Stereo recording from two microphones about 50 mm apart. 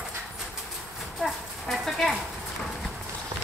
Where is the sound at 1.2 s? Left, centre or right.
Centre.